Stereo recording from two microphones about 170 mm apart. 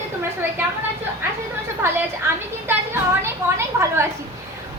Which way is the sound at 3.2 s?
15° right (ahead or behind).